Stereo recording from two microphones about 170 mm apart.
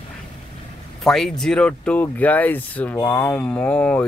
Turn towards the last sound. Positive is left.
turn(degrees=10)  # may be behind; listen again after turning